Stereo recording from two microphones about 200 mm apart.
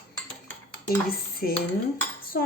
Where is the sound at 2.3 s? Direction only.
50° left (ahead or behind).